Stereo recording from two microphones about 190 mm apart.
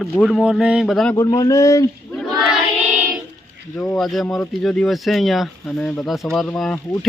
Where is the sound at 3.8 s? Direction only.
5° left (ahead or behind).